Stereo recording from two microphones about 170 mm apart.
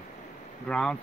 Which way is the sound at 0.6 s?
5° left (ahead or behind).